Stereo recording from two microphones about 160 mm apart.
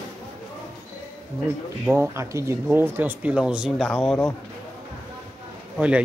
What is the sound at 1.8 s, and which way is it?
Speech, 15° right (ahead or behind).